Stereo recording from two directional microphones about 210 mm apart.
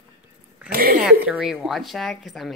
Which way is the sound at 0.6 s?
45° right (ahead or behind).